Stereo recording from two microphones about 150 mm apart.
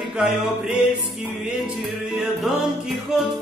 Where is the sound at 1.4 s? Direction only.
Centre (ahead or behind).